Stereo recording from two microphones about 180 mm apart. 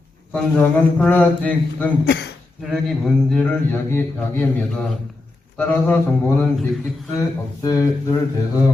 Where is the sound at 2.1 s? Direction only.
70° left (ahead or behind).